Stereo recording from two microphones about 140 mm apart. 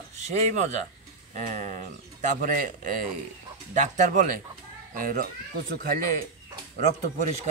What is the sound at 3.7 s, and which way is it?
Speech, 60° right (ahead or behind).